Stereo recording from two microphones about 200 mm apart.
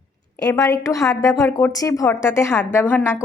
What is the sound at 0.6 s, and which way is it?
A woman's voice, 15° left (ahead or behind).